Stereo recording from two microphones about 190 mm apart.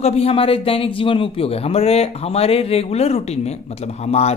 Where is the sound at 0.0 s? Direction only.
30° left (ahead or behind).